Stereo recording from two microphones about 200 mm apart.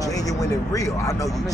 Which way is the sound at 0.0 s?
15° left (ahead or behind).